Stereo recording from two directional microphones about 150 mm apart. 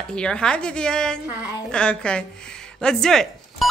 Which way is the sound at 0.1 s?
5° left (ahead or behind).